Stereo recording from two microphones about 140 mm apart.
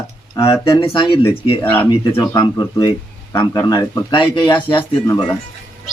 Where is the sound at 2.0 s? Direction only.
35° left (ahead or behind).